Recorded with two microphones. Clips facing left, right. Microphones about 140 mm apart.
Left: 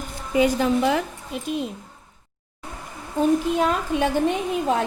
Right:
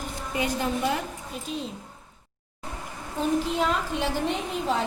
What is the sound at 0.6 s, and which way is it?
Speech, 90° left.